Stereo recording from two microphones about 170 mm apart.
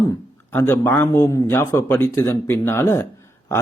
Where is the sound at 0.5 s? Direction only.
15° left (ahead or behind).